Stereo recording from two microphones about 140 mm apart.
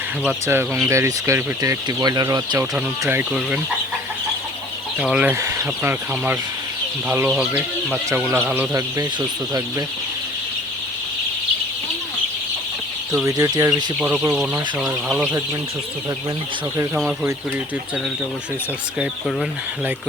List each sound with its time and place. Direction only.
0.3 s speech: 15° right (ahead or behind)
3.0 s speech: 15° right (ahead or behind)
4.9 s speech: 5° right (ahead or behind)
13.2 s speech: 25° right (ahead or behind)
14.0 s speech: 10° right (ahead or behind)